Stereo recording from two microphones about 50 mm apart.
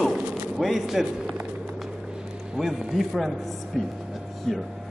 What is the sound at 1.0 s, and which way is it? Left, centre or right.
Speech, right.